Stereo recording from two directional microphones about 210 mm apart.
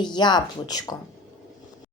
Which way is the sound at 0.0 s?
20° left (ahead or behind).